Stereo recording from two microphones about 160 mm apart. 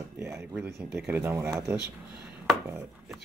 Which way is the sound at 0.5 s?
5° right (ahead or behind).